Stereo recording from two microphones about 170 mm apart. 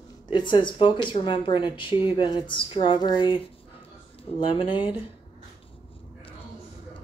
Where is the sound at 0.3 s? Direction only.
25° left (ahead or behind).